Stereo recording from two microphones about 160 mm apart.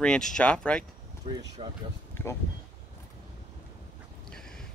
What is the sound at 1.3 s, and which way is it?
Speech, 35° right (ahead or behind).